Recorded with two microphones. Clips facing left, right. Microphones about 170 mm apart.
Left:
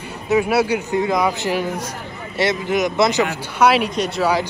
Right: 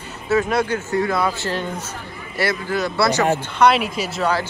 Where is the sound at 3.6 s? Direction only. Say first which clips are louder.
Left 2 dB; centre (ahead or behind).